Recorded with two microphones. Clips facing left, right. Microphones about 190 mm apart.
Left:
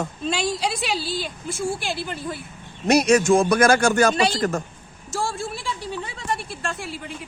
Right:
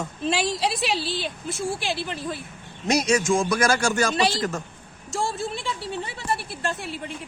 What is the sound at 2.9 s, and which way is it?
A man's voice, 60° left (ahead or behind).